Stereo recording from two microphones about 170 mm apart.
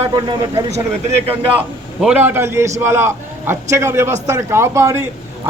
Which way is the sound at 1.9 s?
10° right (ahead or behind).